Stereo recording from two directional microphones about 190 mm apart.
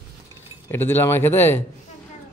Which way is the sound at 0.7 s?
10° left (ahead or behind).